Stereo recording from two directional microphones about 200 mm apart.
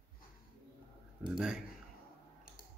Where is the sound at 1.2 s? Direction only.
5° right (ahead or behind).